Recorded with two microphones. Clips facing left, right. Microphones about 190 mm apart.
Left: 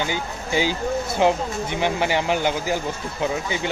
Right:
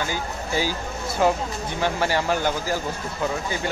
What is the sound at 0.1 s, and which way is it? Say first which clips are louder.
Speech: left 2 dB; 20° left (ahead or behind).